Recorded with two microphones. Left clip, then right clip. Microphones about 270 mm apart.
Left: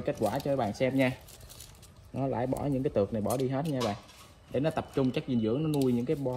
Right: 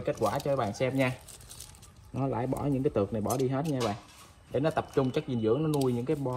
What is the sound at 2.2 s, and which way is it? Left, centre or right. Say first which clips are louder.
Speech: even; right.